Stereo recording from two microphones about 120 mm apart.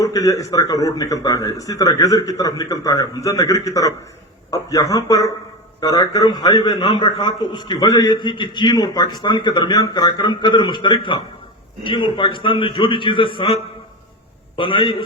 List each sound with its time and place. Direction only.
0.0 s a man's voice: 30° left (ahead or behind); by 15.0 s 45° left (ahead or behind)